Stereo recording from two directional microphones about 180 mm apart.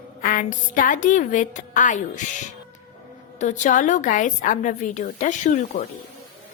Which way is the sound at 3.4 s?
45° left (ahead or behind).